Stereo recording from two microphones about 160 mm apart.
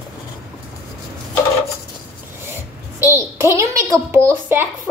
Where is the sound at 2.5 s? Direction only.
15° right (ahead or behind).